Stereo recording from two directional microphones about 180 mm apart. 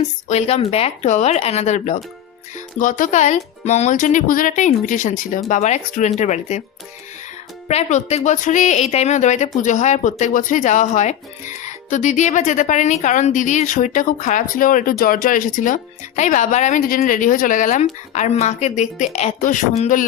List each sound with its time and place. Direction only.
0.3 s speech: 35° left (ahead or behind)
7.7 s speech: 40° left (ahead or behind)